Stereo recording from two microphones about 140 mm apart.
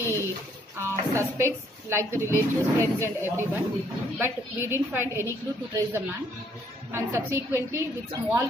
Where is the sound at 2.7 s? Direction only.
15° right (ahead or behind).